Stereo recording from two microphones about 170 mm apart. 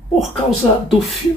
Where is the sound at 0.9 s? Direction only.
Centre (ahead or behind).